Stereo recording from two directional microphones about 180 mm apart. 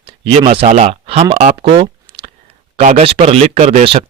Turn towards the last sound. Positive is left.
turn(degrees=-30)  # may be behind; listen again after turning